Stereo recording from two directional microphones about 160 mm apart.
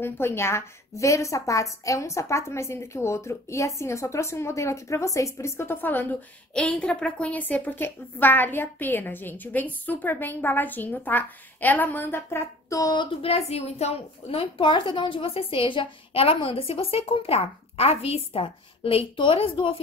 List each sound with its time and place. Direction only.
0.0 s a woman's voice: 15° left (ahead or behind); by 19.8 s 35° left (ahead or behind)